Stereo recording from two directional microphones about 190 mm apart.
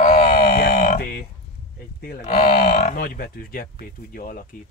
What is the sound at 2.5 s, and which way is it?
Livestock, 50° left (ahead or behind).